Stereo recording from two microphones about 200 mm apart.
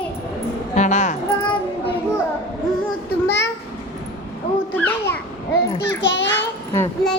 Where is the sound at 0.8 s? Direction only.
35° left (ahead or behind).